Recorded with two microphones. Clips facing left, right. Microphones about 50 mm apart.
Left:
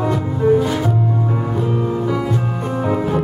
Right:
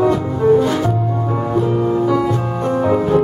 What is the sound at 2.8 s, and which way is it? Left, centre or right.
Music, centre.